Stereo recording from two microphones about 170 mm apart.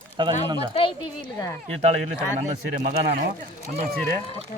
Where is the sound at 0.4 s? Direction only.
25° right (ahead or behind).